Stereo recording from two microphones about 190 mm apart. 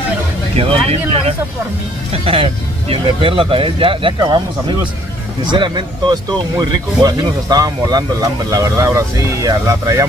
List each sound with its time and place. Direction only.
0.6 s speech: 30° right (ahead or behind)